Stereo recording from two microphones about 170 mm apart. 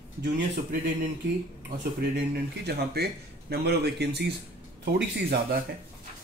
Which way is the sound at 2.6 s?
70° right (ahead or behind).